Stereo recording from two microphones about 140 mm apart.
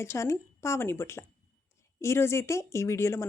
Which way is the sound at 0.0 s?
20° left (ahead or behind).